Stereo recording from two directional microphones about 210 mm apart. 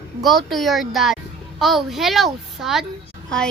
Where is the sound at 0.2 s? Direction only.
Centre (ahead or behind).